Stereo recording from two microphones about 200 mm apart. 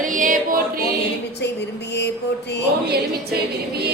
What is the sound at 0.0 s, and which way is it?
Music, 40° right (ahead or behind).